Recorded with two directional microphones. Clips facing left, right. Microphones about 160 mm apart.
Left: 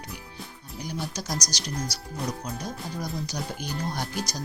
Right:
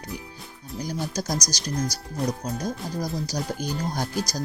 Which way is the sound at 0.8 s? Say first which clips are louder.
Right 4 dB; 45° right (ahead or behind).